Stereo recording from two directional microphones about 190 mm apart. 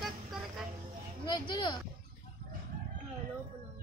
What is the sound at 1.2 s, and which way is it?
Speech, 25° left (ahead or behind).